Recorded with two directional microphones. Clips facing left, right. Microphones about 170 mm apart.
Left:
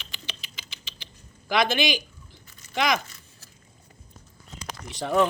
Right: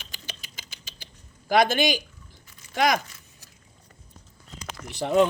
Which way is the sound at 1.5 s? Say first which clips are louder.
Right 3 dB; 50° right (ahead or behind).